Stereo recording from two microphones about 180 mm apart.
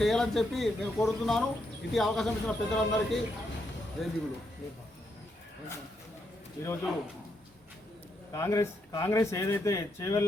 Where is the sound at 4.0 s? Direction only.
Centre (ahead or behind).